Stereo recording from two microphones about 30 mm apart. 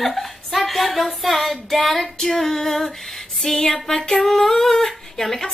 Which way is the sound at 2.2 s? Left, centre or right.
Centre.